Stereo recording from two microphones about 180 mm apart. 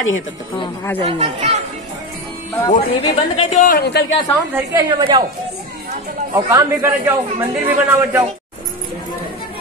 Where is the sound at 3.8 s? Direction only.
65° left (ahead or behind).